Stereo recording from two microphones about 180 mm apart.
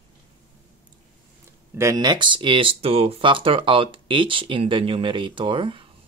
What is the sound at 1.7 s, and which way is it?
Speech, 20° right (ahead or behind).